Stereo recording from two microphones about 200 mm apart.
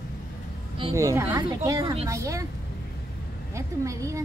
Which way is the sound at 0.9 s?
15° right (ahead or behind).